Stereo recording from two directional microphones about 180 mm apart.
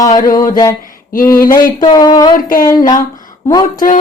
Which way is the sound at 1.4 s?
50° left (ahead or behind).